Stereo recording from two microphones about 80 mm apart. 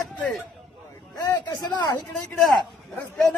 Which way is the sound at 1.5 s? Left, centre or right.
Left.